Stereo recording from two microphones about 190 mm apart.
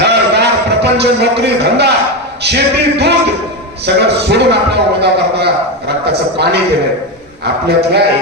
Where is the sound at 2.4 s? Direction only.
60° right (ahead or behind).